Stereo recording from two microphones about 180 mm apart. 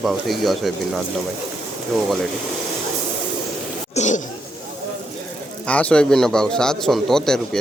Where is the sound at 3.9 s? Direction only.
40° left (ahead or behind).